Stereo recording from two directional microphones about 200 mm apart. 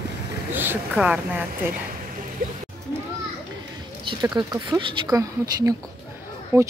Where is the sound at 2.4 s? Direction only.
45° right (ahead or behind).